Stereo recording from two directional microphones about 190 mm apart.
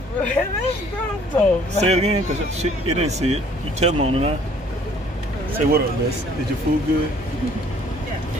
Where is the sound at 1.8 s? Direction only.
35° right (ahead or behind).